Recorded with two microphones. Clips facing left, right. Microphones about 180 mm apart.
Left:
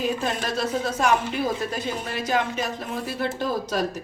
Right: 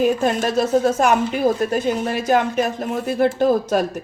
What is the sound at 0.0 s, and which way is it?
Speech, 50° right (ahead or behind).